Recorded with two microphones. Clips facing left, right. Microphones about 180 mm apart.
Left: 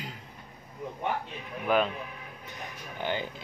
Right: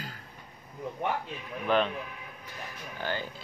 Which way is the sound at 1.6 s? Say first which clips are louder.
Left 1 dB; 5° left (ahead or behind).